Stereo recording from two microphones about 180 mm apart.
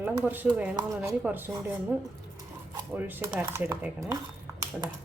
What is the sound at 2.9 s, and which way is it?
Speech, 10° right (ahead or behind).